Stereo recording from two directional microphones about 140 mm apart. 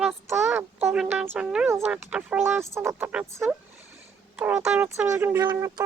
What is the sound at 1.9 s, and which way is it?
Speech, 5° right (ahead or behind).